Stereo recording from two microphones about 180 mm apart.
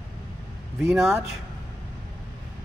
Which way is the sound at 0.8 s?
Centre (ahead or behind).